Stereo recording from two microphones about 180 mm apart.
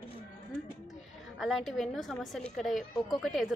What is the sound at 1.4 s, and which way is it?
A woman's voice, centre (ahead or behind).